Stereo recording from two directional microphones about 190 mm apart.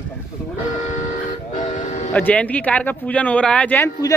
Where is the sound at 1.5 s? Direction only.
40° left (ahead or behind).